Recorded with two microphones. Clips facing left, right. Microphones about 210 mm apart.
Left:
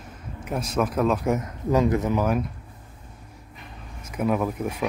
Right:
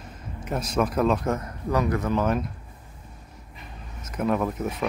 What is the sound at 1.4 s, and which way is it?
Speech, 20° left (ahead or behind).